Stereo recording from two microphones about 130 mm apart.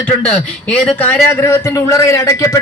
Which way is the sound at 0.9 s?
10° left (ahead or behind).